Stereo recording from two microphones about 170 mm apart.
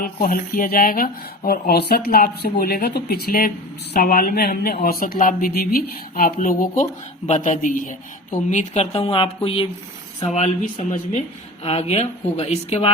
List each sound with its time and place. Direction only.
0.0 s speech: 55° left (ahead or behind)
1.5 s a man's voice: 70° left (ahead or behind); by 12.9 s 35° left (ahead or behind)